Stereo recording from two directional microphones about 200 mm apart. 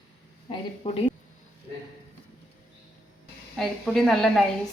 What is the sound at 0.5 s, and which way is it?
Speech, 30° left (ahead or behind).